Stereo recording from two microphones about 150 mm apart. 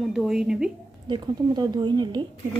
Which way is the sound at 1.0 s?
30° right (ahead or behind).